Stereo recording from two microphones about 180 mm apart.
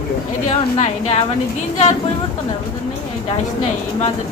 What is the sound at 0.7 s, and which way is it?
Speech, 40° left (ahead or behind).